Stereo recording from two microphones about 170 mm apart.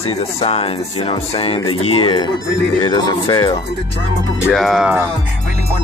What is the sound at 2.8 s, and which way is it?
Speech, 25° left (ahead or behind).